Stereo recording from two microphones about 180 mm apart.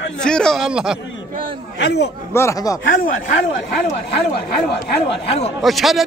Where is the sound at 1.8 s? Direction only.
70° left (ahead or behind).